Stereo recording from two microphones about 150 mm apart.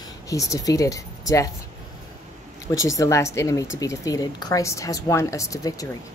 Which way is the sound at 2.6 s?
20° left (ahead or behind).